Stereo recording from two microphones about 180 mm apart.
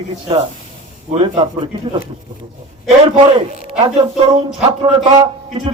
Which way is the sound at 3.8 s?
30° right (ahead or behind).